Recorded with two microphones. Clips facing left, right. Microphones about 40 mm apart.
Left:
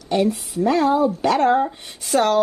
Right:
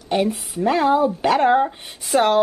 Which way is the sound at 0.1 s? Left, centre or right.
Right.